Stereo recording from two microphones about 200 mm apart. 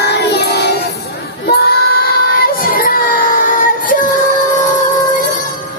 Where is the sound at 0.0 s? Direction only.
55° left (ahead or behind).